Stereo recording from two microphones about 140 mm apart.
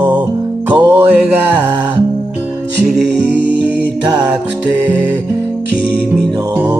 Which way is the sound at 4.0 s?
30° right (ahead or behind).